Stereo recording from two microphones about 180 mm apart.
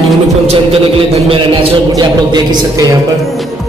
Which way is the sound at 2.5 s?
20° right (ahead or behind).